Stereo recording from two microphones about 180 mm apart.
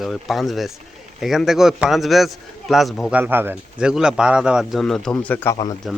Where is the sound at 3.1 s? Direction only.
10° right (ahead or behind); by 5.6 s 10° left (ahead or behind).